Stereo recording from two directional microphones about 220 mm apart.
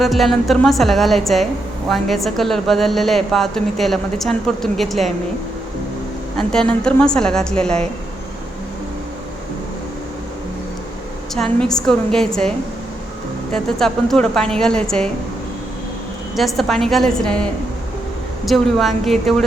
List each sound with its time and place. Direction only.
0.0 s a woman's voice: centre (ahead or behind)
6.3 s a woman's voice: 5° left (ahead or behind)
11.3 s a woman's voice: 5° left (ahead or behind)
16.3 s a woman's voice: centre (ahead or behind)